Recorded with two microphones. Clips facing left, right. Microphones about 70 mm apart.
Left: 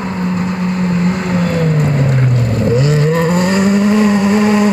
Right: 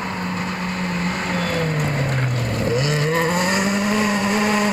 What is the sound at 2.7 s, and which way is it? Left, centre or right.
Vehicle, centre.